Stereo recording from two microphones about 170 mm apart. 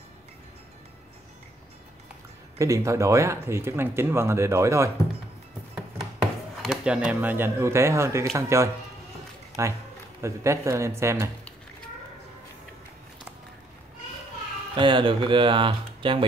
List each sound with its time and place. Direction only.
2.6 s speech: 20° right (ahead or behind)
6.6 s speech: 5° right (ahead or behind)
14.8 s speech: 30° right (ahead or behind)